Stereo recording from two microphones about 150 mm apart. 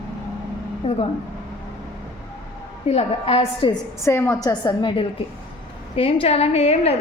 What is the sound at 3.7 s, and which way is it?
Speech, 20° left (ahead or behind).